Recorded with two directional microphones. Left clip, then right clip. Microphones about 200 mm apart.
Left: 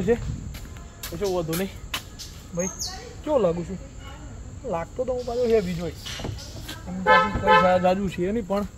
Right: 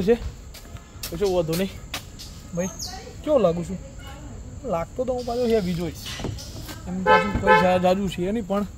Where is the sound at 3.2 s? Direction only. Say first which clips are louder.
Right 2 dB; 20° right (ahead or behind).